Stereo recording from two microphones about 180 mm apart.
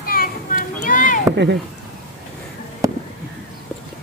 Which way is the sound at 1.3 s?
70° right (ahead or behind).